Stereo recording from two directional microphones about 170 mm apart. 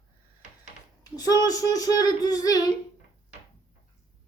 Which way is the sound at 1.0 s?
25° left (ahead or behind).